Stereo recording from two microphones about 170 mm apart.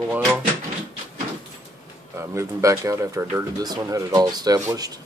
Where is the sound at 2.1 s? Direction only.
15° right (ahead or behind).